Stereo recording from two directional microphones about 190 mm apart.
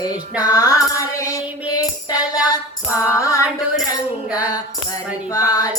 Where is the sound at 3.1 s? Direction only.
15° left (ahead or behind).